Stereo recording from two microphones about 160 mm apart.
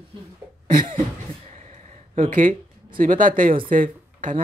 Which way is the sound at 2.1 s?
55° right (ahead or behind).